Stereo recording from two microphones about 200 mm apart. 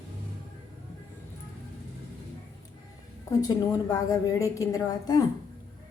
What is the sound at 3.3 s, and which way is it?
A woman's voice, 20° left (ahead or behind).